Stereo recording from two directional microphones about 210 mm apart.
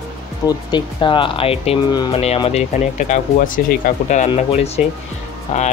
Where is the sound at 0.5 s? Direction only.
20° left (ahead or behind).